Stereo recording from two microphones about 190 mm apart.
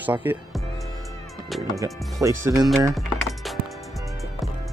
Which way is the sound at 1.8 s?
15° right (ahead or behind).